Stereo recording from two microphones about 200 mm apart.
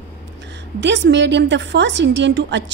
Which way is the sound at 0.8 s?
60° right (ahead or behind).